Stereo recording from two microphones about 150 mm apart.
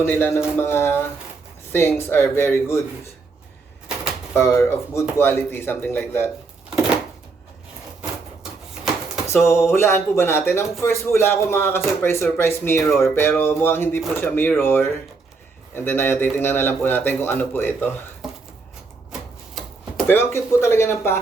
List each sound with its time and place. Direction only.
0.1 s speech: 15° left (ahead or behind)
4.4 s speech: 15° left (ahead or behind)
9.3 s speech: 15° left (ahead or behind)
20.1 s speech: 15° left (ahead or behind)